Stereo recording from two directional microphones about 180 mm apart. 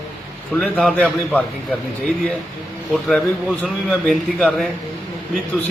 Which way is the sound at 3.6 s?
5° left (ahead or behind).